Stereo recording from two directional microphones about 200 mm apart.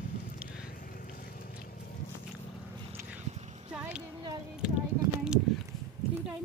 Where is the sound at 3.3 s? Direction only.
35° right (ahead or behind).